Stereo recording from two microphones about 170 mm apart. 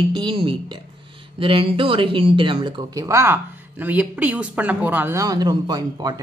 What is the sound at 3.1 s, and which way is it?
Speech, 15° right (ahead or behind).